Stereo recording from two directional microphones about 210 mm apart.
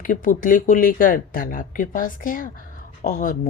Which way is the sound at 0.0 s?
40° left (ahead or behind).